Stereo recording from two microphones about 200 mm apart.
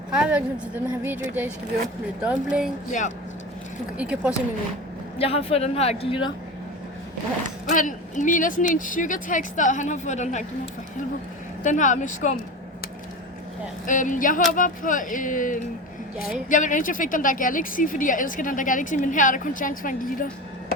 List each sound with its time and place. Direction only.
0.1 s a woman's voice: 5° right (ahead or behind)
2.2 s speech: 5° right (ahead or behind)
2.9 s speech: 35° left (ahead or behind)
3.9 s speech: 5° right (ahead or behind)
5.1 s speech: 30° left (ahead or behind)
7.7 s speech: 40° left (ahead or behind)
11.6 s speech: 40° left (ahead or behind)
13.8 s speech: 40° left (ahead or behind)